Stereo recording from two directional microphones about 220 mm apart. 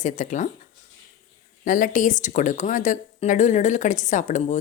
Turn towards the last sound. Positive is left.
turn(degrees=35)  # may be behind; listen again after turning